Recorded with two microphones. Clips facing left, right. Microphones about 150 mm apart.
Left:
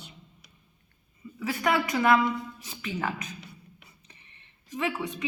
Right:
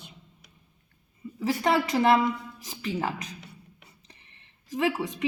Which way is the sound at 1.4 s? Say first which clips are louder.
Right 2 dB; 30° right (ahead or behind).